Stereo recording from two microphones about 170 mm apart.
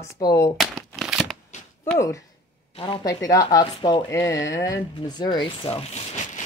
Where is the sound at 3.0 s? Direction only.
20° left (ahead or behind); by 6.4 s 40° left (ahead or behind).